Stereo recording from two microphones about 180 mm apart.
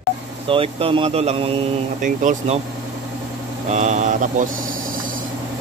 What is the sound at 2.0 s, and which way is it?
Speech, 45° right (ahead or behind).